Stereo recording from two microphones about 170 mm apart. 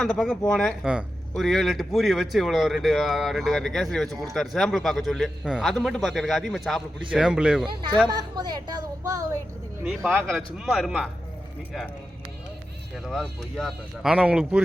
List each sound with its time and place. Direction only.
0.0 s speech: centre (ahead or behind)
8.1 s speech: 25° right (ahead or behind)
9.8 s speech: centre (ahead or behind)
13.1 s speech: centre (ahead or behind)